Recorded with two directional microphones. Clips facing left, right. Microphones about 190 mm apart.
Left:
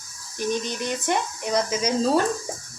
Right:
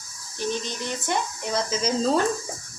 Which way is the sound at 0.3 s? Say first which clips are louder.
Left 3 dB; 15° left (ahead or behind).